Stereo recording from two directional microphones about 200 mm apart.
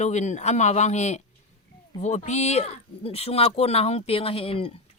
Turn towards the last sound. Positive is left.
turn(degrees=30)  # may be behind; listen again after turning